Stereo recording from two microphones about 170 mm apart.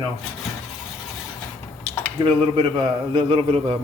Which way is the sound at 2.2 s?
30° right (ahead or behind).